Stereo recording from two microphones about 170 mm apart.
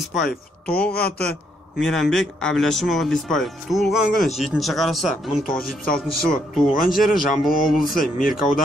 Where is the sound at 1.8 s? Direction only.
Centre (ahead or behind).